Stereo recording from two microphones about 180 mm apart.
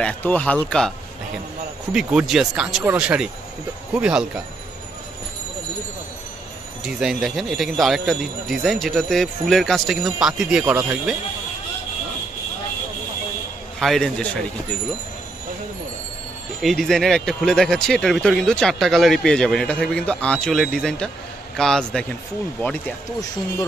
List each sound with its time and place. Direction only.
0.0 s speech: 10° left (ahead or behind)
6.8 s speech: centre (ahead or behind)
13.7 s speech: centre (ahead or behind)
16.6 s speech: centre (ahead or behind)